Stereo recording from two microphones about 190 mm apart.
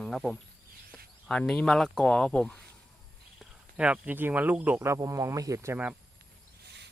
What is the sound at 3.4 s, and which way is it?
Speech, 5° right (ahead or behind).